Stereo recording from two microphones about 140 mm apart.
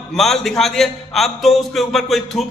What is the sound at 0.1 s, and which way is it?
A man's voice, centre (ahead or behind).